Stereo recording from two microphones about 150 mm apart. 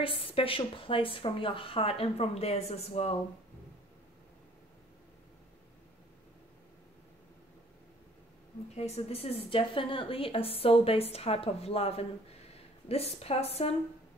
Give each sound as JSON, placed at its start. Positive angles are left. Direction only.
{"t": 0.0, "sound": "a woman's voice", "side_deg": 35}
{"t": 8.7, "sound": "a woman's voice", "side_deg": 45}